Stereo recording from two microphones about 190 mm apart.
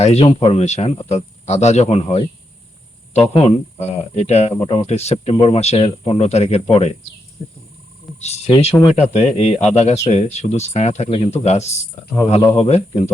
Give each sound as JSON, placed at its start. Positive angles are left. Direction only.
{"t": 0.0, "sound": "speech", "side_deg": 35}
{"t": 3.3, "sound": "speech", "side_deg": 35}
{"t": 8.2, "sound": "speech", "side_deg": 35}